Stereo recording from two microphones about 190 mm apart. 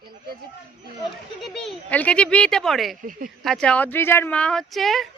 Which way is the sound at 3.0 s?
45° right (ahead or behind).